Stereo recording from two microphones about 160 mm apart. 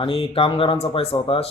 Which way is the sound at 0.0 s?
35° left (ahead or behind).